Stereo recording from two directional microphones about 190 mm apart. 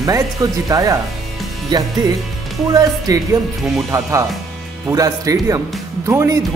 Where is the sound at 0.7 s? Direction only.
20° right (ahead or behind).